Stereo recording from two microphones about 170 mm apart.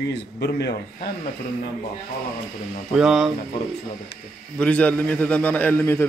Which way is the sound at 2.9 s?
5° right (ahead or behind).